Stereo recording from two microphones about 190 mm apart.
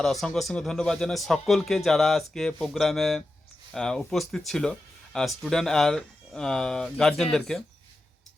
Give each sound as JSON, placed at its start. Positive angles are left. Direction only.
{"t": 0.0, "sound": "speech", "side_deg": 0}